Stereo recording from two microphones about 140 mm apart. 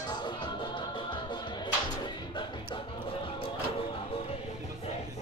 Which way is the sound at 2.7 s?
35° left (ahead or behind).